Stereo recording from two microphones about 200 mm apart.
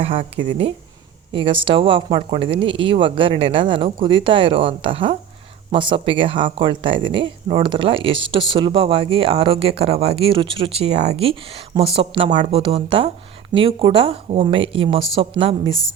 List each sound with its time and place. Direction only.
0.0 s speech: 30° right (ahead or behind)